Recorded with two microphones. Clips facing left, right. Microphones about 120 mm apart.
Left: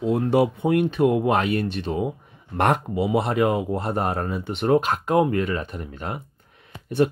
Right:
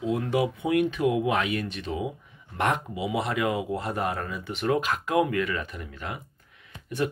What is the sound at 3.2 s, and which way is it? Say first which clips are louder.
Speech: left 6 dB; 35° left (ahead or behind).